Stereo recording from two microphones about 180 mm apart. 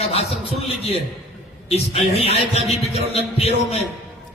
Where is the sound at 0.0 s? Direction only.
35° left (ahead or behind).